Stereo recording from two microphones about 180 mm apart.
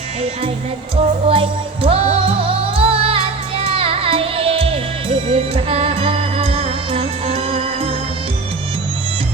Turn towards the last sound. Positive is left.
turn(degrees=-35)  # may be behind; listen again after turning